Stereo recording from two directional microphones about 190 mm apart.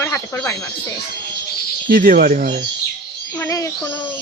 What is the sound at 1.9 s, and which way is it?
Speech, 50° right (ahead or behind).